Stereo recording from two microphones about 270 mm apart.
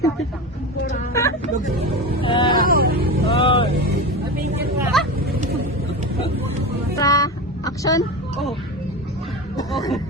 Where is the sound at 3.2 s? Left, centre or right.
Centre.